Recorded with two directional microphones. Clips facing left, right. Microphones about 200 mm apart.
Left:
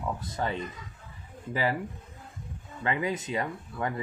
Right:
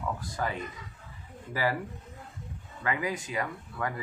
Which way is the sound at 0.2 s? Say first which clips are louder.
Left 1 dB; 25° left (ahead or behind).